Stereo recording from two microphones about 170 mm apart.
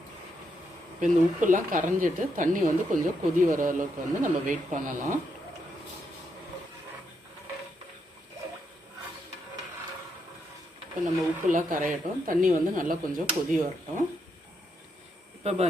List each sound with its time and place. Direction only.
0.9 s speech: 50° right (ahead or behind)
11.0 s speech: 50° right (ahead or behind)
15.4 s a man's voice: 40° right (ahead or behind)